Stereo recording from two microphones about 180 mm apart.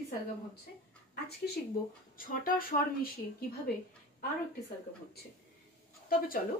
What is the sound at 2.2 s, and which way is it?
Speech, 50° left (ahead or behind).